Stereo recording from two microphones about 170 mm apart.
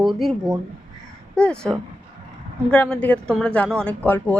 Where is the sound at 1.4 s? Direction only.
5° left (ahead or behind).